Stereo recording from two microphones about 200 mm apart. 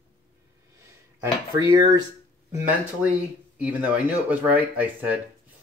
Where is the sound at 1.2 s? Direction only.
15° right (ahead or behind).